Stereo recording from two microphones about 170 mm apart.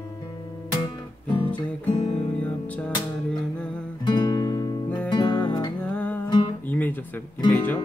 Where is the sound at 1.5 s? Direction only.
40° left (ahead or behind).